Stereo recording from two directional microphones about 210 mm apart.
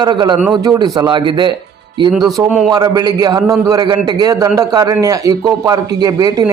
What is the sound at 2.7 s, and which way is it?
A man's voice, 20° right (ahead or behind).